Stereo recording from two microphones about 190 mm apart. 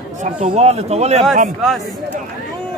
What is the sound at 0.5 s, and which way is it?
Speech, 35° right (ahead or behind).